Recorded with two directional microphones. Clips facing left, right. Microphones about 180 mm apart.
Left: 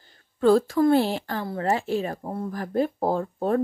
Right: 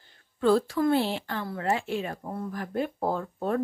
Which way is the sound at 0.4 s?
45° left (ahead or behind).